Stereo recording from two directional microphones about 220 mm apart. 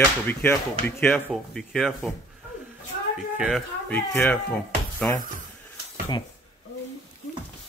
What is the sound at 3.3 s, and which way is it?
Speech, 5° right (ahead or behind).